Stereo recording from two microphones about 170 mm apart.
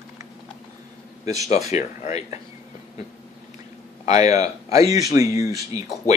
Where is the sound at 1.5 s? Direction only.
40° left (ahead or behind).